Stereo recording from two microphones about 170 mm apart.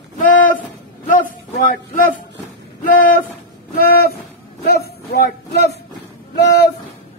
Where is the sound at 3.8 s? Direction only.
65° left (ahead or behind).